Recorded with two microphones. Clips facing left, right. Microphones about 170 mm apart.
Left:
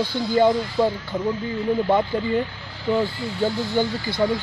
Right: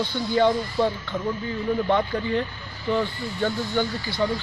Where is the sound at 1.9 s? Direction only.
10° left (ahead or behind).